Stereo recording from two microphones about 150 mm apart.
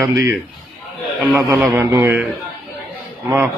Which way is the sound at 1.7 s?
15° right (ahead or behind).